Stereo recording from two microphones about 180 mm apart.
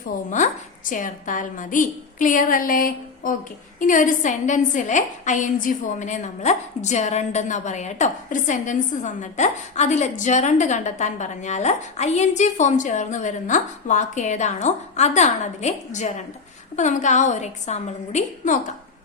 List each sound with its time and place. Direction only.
0.3 s a woman's voice: 45° left (ahead or behind)